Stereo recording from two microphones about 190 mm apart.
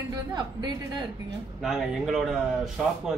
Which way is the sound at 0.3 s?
20° right (ahead or behind).